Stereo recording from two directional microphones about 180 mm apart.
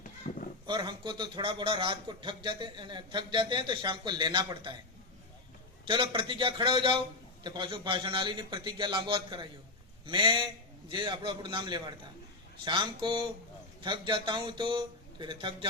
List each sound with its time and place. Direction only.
0.0 s a sound: 45° left (ahead or behind)
0.7 s a man's voice: 25° right (ahead or behind)
5.9 s a man's voice: 25° right (ahead or behind)